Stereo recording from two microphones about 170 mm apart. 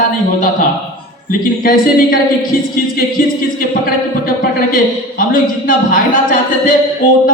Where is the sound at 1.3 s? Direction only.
60° left (ahead or behind).